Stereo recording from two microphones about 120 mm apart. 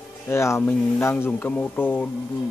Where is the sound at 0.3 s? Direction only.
20° left (ahead or behind).